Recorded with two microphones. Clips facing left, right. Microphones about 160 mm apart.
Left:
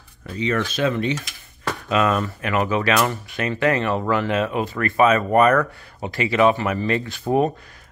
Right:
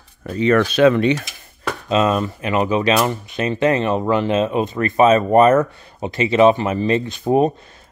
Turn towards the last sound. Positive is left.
turn(degrees=-20)  # may be behind; listen again after turning